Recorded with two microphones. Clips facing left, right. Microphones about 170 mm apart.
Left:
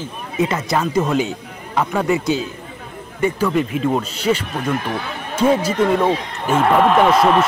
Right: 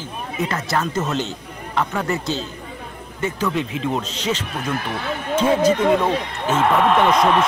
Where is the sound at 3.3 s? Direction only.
10° left (ahead or behind).